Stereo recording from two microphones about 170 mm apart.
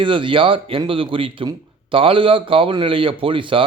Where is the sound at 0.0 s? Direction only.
30° right (ahead or behind).